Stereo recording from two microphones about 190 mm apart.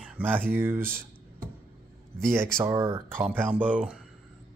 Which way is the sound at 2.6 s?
15° right (ahead or behind).